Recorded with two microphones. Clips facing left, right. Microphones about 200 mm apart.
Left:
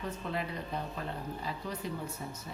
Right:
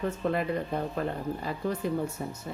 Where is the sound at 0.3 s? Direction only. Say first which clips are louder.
Right 9 dB; 55° right (ahead or behind).